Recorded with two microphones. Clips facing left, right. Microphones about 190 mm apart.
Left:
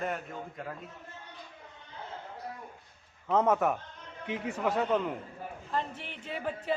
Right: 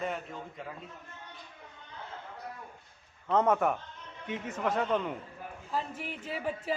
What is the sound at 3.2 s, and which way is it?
A man's voice, 5° left (ahead or behind).